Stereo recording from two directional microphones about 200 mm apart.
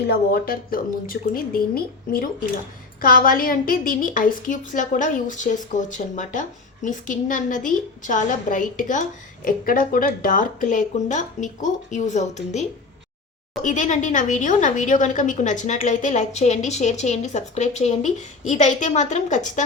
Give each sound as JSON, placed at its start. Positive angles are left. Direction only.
{"t": 0.0, "sound": "a woman's voice", "side_deg": 50}